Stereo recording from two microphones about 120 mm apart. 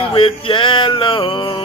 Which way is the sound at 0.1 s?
45° left (ahead or behind).